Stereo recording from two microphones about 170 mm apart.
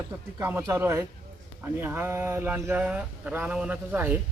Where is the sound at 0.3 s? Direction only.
15° right (ahead or behind).